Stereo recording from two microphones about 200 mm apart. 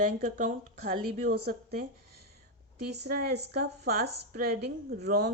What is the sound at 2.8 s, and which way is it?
Speech, 55° right (ahead or behind).